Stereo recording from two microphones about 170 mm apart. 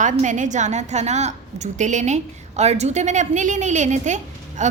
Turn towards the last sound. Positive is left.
turn(degrees=-45)  # may be behind; listen again after turning